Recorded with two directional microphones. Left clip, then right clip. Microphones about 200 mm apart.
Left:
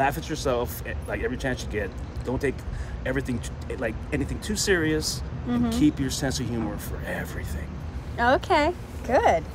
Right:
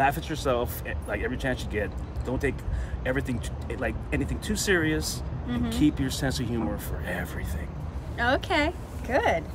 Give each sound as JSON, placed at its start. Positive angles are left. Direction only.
{"t": 0.0, "sound": "speech", "side_deg": -15}
{"t": 8.2, "sound": "speech", "side_deg": 10}